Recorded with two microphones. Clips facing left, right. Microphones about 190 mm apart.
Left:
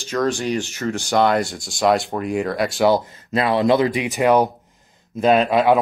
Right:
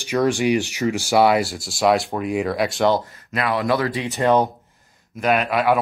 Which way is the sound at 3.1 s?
25° left (ahead or behind).